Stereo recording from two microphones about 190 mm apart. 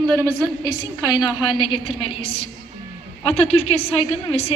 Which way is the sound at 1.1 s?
25° left (ahead or behind).